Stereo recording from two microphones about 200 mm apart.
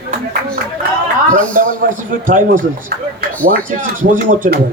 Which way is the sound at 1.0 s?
40° right (ahead or behind).